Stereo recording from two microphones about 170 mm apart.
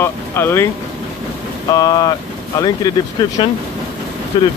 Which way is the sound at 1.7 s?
20° left (ahead or behind).